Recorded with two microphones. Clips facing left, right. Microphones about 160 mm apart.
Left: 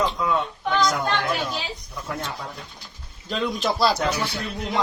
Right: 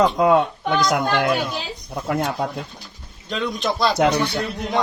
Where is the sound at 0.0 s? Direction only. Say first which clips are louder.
Right 8 dB; 75° right (ahead or behind).